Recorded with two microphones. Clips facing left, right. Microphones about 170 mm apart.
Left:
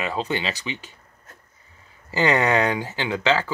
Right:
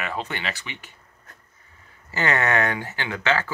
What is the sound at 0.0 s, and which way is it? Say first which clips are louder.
Speech: left 4 dB; 20° left (ahead or behind).